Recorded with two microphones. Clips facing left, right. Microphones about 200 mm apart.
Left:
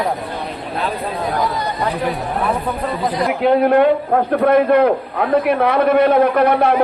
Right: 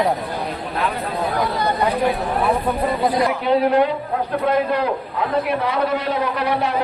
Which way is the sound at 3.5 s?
55° left (ahead or behind).